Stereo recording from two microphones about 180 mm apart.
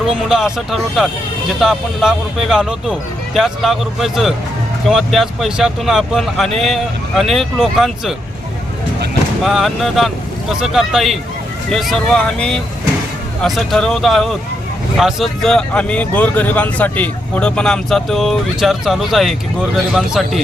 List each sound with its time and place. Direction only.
0.0 s speech: centre (ahead or behind)
9.4 s speech: centre (ahead or behind)